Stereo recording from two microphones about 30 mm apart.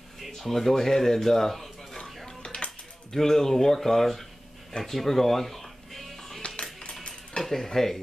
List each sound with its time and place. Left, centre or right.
0.2 s speech: centre
2.2 s dishes: left
3.2 s speech: centre
4.9 s music: centre
6.6 s cutlery: left
7.4 s speech: centre